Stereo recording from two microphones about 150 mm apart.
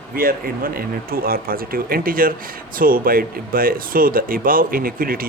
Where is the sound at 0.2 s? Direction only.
75° right (ahead or behind).